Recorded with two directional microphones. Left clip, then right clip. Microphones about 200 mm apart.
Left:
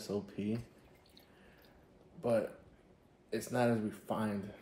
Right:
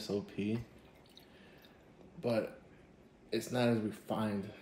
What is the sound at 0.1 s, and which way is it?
Speech, 25° left (ahead or behind).